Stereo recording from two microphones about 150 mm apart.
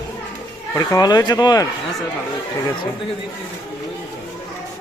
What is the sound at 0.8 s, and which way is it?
Speech, 25° left (ahead or behind).